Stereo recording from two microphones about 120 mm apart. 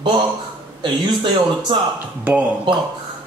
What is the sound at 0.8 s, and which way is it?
Speech, 40° right (ahead or behind).